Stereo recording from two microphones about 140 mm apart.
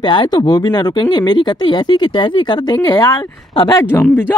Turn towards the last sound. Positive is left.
turn(degrees=15)  # may be behind; listen again after turning